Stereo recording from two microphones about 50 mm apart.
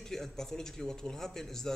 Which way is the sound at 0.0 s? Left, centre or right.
Centre.